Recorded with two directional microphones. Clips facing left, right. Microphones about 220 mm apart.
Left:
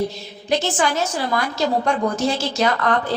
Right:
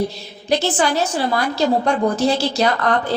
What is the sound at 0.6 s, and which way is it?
A woman's voice, 35° right (ahead or behind).